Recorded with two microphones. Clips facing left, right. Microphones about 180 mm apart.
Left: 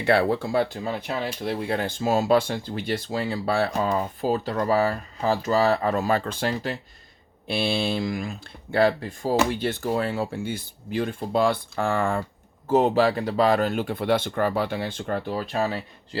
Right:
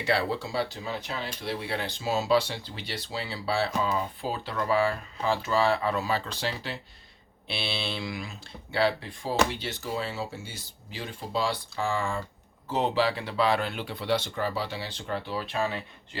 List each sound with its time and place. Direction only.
0.0 s speech: 55° left (ahead or behind)
12.6 s speech: 45° left (ahead or behind)